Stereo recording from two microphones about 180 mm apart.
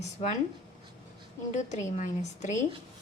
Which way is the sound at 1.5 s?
40° left (ahead or behind).